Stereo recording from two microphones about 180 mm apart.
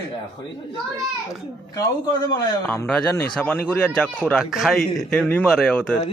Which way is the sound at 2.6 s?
5° left (ahead or behind).